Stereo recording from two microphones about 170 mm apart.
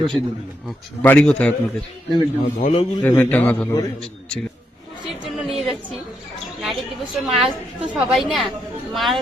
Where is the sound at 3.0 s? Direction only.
10° left (ahead or behind).